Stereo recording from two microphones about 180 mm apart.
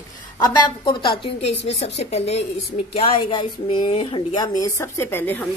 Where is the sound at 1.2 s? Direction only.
35° left (ahead or behind).